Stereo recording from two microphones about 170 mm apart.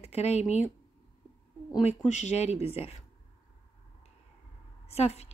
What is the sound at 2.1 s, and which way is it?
Speech, 45° left (ahead or behind).